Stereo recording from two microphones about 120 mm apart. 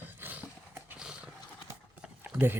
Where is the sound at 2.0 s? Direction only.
15° right (ahead or behind).